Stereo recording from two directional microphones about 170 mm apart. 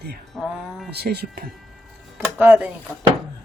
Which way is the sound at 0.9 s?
70° right (ahead or behind).